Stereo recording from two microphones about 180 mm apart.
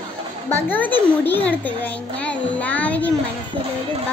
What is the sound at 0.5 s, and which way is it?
A child's voice, 10° left (ahead or behind).